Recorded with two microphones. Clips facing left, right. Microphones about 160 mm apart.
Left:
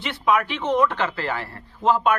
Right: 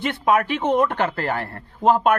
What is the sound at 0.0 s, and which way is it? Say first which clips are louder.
Speech: right 2 dB; 50° right (ahead or behind).